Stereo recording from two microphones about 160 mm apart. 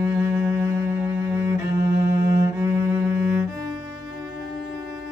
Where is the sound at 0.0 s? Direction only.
15° right (ahead or behind).